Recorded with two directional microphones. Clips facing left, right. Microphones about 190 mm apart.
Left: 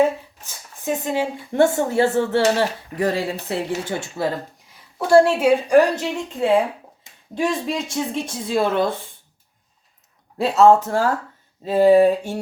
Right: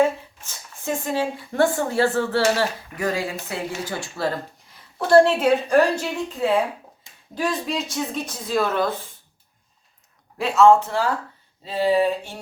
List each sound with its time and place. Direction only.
0.9 s speech: 20° left (ahead or behind)
4.9 s a woman's voice: 10° left (ahead or behind)
6.4 s speech: 25° left (ahead or behind)
10.3 s speech: 35° left (ahead or behind)